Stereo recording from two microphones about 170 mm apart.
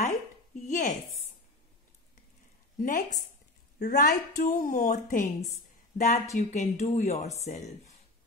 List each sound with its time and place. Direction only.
0.7 s speech: 50° left (ahead or behind)
2.8 s speech: 50° left (ahead or behind)